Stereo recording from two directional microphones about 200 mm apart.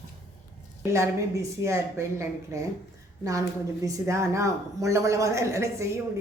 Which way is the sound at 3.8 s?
15° right (ahead or behind).